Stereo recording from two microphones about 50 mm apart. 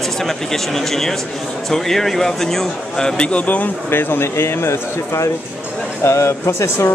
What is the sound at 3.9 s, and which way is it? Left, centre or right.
Speech, left.